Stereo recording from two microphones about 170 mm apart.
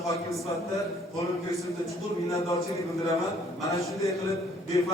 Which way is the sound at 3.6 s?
20° left (ahead or behind).